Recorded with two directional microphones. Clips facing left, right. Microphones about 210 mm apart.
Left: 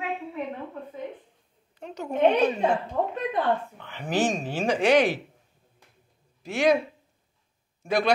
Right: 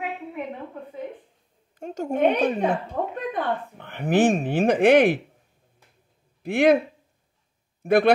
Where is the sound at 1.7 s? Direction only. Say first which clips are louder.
Right 3 dB; 45° right (ahead or behind).